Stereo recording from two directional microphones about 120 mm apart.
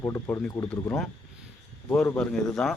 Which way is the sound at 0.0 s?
25° left (ahead or behind).